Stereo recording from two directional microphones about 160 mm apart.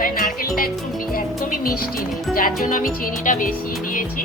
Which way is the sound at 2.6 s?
60° left (ahead or behind).